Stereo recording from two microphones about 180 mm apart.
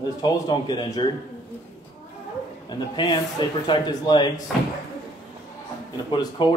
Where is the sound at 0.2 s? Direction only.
25° left (ahead or behind).